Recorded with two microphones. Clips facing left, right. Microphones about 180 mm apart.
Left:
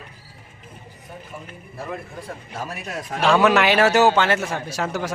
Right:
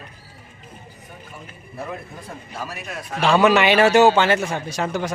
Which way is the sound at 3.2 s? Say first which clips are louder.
Right 1 dB; centre (ahead or behind).